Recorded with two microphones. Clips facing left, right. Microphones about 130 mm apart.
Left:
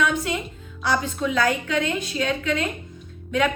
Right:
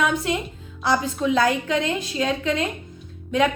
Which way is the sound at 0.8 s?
30° right (ahead or behind).